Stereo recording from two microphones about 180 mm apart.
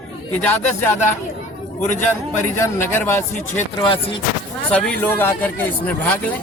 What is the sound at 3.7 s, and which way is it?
Speech, 30° left (ahead or behind).